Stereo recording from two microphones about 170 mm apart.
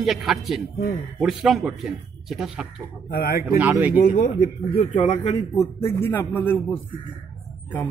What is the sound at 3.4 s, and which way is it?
Speech, 10° right (ahead or behind).